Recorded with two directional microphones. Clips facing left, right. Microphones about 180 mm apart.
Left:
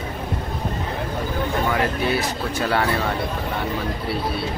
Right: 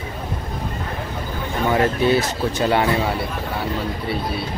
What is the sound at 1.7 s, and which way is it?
Speech, 25° right (ahead or behind).